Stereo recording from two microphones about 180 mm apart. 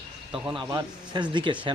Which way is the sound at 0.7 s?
25° right (ahead or behind).